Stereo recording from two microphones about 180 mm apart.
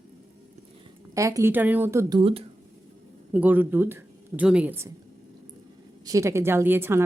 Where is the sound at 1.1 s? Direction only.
15° right (ahead or behind).